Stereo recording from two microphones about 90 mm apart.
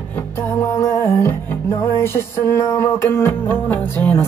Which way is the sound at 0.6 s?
35° left (ahead or behind).